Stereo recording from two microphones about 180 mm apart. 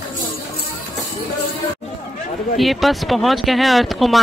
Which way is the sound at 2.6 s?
Centre (ahead or behind).